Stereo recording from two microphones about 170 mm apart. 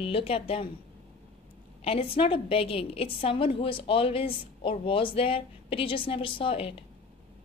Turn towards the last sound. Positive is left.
turn(degrees=35)  # may be behind; listen again after turning